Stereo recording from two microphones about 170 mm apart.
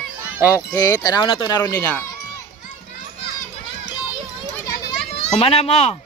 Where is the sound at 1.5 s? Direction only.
15° left (ahead or behind).